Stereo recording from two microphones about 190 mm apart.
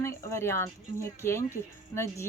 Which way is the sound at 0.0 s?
15° left (ahead or behind).